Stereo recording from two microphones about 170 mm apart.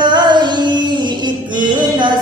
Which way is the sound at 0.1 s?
25° right (ahead or behind).